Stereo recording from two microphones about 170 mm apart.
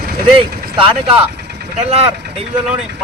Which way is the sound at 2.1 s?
80° right.